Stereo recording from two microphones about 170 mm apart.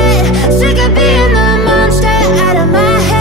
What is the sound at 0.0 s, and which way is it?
Music, centre (ahead or behind).